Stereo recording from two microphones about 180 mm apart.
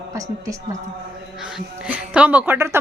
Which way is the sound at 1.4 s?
5° right (ahead or behind).